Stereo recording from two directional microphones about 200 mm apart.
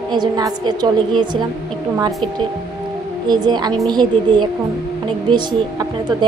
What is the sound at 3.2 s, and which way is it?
A woman's voice, 20° right (ahead or behind).